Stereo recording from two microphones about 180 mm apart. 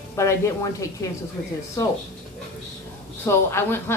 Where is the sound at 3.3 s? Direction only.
15° left (ahead or behind).